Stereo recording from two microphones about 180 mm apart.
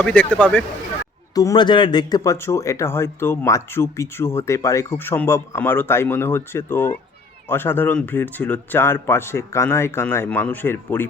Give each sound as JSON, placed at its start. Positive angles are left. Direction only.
{"t": 0.0, "sound": "speech", "side_deg": 5}
{"t": 1.4, "sound": "speech", "side_deg": 20}